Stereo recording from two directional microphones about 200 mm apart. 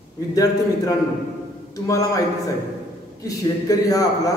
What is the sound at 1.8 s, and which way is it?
Speech, 15° left (ahead or behind).